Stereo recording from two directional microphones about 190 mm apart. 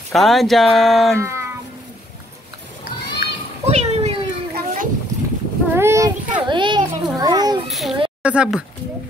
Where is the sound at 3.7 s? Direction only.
35° right (ahead or behind).